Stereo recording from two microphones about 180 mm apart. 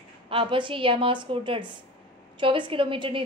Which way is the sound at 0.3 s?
30° right (ahead or behind).